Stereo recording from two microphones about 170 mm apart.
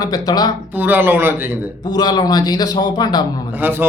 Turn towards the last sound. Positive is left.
turn(degrees=-10)  # may be behind; listen again after turning